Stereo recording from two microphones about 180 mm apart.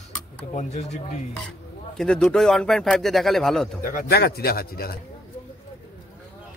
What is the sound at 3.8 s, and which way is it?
Speech, 50° left (ahead or behind).